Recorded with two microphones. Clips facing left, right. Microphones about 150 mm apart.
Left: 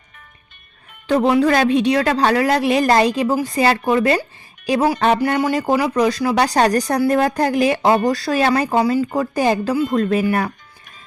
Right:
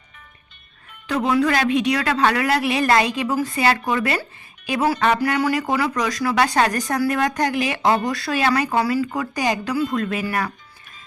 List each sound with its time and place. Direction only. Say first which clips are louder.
1.0 s speech: left 4 dB; 35° left (ahead or behind)
8.7 s speech: left 3 dB; 20° left (ahead or behind)
9.1 s speech: left 5 dB; 35° left (ahead or behind)